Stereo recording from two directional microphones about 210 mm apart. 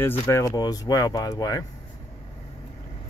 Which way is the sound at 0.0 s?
10° left (ahead or behind).